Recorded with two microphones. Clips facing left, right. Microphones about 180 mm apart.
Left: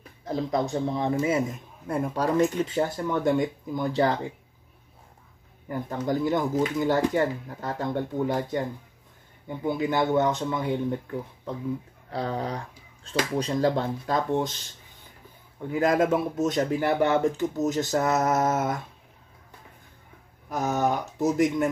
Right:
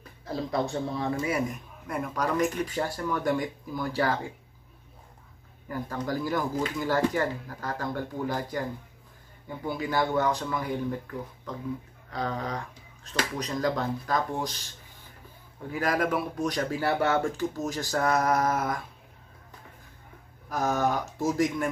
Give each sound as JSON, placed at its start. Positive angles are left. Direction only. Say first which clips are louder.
{"t": 0.2, "sound": "speech", "louder": "left 3 dB", "side_deg": 20}
{"t": 5.7, "sound": "speech", "louder": "left 4 dB", "side_deg": 20}
{"t": 9.7, "sound": "speech", "louder": "left 4 dB", "side_deg": 20}
{"t": 15.7, "sound": "speech", "louder": "left 5 dB", "side_deg": 25}
{"t": 20.4, "sound": "speech", "louder": "left 1 dB", "side_deg": 20}